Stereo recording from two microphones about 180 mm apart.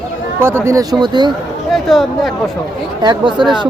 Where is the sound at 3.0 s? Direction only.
25° right (ahead or behind).